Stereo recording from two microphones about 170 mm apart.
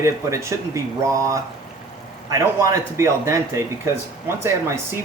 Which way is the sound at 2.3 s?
15° right (ahead or behind).